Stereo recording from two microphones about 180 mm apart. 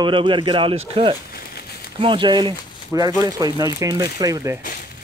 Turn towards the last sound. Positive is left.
turn(degrees=-20)  # may be behind; listen again after turning